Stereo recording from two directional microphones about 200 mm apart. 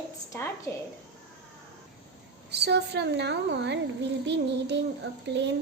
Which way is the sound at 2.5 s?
55° right (ahead or behind).